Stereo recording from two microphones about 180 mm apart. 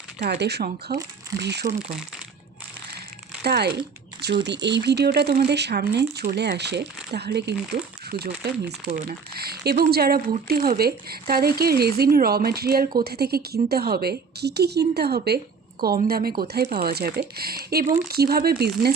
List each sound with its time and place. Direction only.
0.2 s speech: 65° right (ahead or behind)
1.9 s speech: 5° right (ahead or behind)
3.4 s speech: 65° right (ahead or behind)
4.4 s speech: 75° right (ahead or behind)